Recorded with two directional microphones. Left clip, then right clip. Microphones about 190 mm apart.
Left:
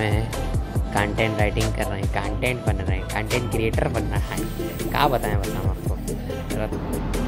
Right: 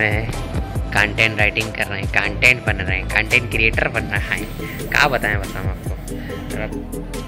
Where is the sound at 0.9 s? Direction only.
20° left (ahead or behind).